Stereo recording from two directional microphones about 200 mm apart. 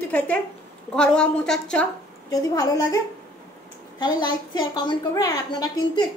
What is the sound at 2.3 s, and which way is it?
Speech, 20° left (ahead or behind).